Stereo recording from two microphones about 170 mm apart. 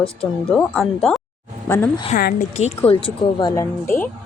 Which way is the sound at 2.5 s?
40° left (ahead or behind).